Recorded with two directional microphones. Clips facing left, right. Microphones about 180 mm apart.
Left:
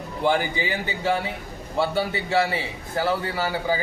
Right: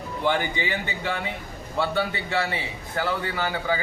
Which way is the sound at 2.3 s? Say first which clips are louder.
Left 7 dB; 30° left (ahead or behind).